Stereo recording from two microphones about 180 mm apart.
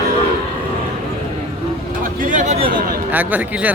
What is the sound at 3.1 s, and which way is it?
Speech, 10° right (ahead or behind).